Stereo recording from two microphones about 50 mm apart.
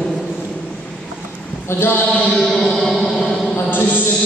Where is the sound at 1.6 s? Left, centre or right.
Left.